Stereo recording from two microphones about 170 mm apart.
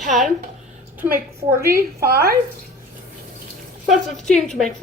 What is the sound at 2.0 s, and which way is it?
Speech, 65° right (ahead or behind).